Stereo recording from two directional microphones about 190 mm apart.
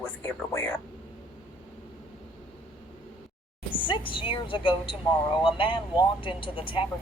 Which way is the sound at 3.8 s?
25° left (ahead or behind).